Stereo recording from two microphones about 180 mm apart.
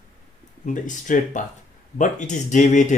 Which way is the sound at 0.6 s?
45° left (ahead or behind).